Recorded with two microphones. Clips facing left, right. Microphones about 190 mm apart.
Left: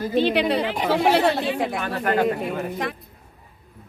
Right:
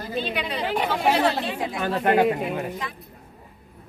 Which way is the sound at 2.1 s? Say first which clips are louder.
Right 1 dB; 5° right (ahead or behind).